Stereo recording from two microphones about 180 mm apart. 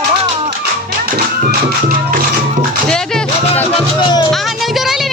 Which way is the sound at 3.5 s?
25° left (ahead or behind).